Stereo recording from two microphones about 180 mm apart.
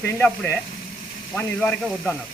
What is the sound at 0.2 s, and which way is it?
Speech, 10° left (ahead or behind).